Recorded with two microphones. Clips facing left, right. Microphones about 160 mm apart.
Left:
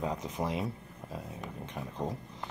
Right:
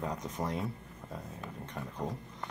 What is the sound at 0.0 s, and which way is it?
Speech, centre (ahead or behind).